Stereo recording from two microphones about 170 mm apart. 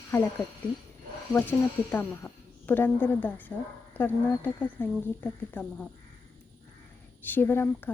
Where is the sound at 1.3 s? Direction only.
10° left (ahead or behind).